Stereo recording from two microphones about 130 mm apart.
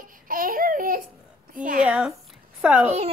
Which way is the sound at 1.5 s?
90° right.